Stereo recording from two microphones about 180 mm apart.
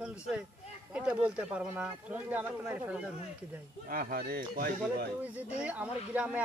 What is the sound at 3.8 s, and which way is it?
Speech, 55° right (ahead or behind).